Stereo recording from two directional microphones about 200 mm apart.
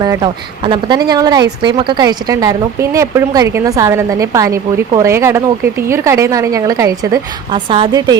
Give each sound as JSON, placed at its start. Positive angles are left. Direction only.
{"t": 0.0, "sound": "a woman's voice", "side_deg": -20}